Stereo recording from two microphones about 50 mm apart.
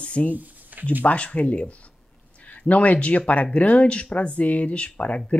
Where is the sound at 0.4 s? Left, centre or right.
Right.